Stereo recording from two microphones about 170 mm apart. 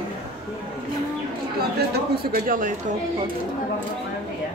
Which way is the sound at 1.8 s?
65° right (ahead or behind).